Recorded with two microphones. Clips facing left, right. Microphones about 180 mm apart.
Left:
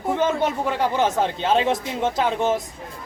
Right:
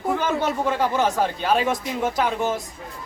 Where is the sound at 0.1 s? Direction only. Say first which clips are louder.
Left 2 dB; 20° left (ahead or behind).